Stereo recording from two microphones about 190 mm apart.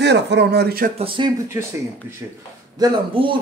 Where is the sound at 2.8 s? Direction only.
25° right (ahead or behind).